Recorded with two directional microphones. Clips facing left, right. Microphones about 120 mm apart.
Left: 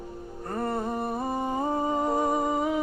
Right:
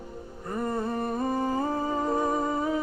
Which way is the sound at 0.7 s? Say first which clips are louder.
Right 1 dB; 15° left (ahead or behind).